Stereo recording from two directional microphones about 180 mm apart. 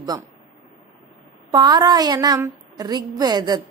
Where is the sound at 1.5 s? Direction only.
20° right (ahead or behind).